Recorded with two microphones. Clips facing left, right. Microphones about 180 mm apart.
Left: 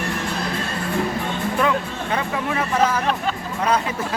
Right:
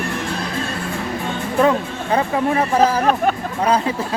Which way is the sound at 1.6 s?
30° right (ahead or behind).